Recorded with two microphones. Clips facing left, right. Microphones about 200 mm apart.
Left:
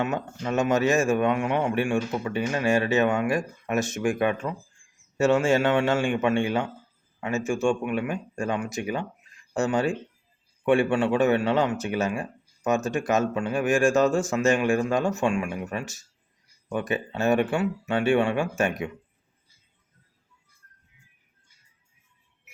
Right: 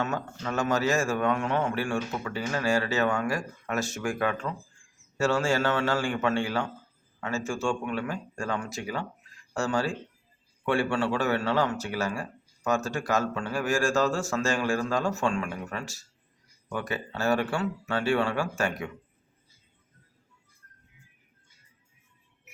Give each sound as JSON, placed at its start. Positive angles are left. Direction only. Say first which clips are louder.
{"t": 0.0, "sound": "speech", "louder": "left 3 dB", "side_deg": 20}